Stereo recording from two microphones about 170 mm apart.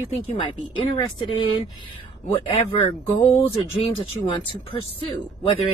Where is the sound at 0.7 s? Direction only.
25° left (ahead or behind).